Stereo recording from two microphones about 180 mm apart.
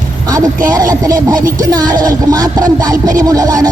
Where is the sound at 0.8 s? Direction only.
20° right (ahead or behind).